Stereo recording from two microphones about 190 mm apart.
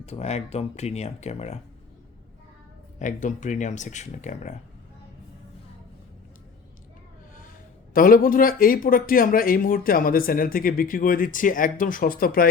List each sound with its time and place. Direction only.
0.0 s speech: 35° left (ahead or behind)
3.0 s speech: 40° left (ahead or behind)
7.9 s speech: 50° left (ahead or behind)